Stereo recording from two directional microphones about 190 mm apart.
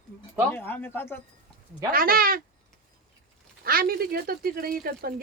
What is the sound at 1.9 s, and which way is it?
Speech, 50° right (ahead or behind).